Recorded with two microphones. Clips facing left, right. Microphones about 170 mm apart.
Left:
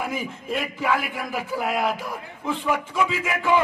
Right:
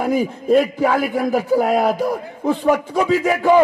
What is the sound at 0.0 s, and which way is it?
A man's voice, 40° right (ahead or behind).